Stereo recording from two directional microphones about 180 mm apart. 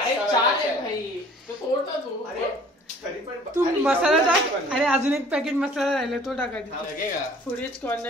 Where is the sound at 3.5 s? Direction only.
10° right (ahead or behind).